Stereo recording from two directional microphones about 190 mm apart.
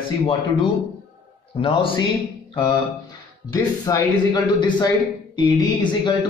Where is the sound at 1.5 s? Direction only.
25° left (ahead or behind).